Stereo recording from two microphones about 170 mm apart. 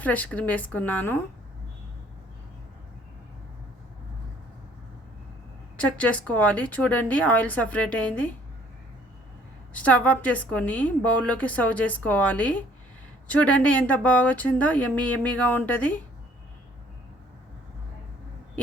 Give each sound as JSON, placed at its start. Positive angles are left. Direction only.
{"t": 0.0, "sound": "a woman's voice", "side_deg": 10}
{"t": 5.7, "sound": "a woman's voice", "side_deg": 5}
{"t": 9.7, "sound": "a woman's voice", "side_deg": 10}